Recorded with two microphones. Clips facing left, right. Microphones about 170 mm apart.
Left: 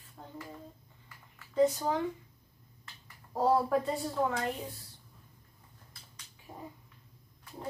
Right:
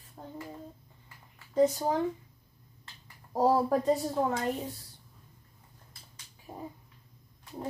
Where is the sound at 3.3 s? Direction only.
40° right (ahead or behind).